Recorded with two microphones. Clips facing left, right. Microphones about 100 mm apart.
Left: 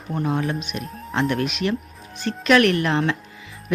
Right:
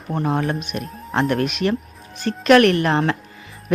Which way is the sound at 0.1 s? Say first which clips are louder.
Right 2 dB; 45° right (ahead or behind).